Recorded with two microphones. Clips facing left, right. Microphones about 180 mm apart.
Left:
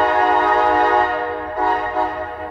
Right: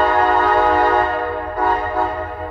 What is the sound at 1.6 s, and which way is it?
Train horn, 25° left (ahead or behind).